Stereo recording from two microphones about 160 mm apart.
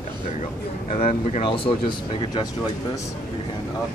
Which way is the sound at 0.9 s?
45° left (ahead or behind).